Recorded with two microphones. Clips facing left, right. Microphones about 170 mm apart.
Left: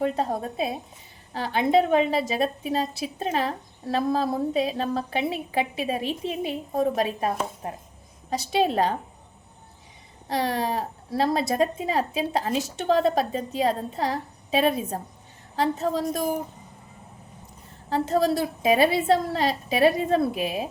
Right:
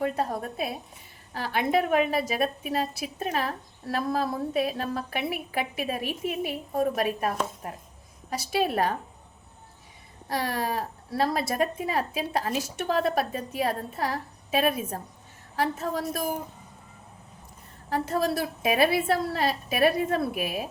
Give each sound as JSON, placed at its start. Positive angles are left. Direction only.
{"t": 0.0, "sound": "a woman's voice", "side_deg": 25}
{"t": 10.2, "sound": "a woman's voice", "side_deg": 20}
{"t": 17.8, "sound": "a woman's voice", "side_deg": 20}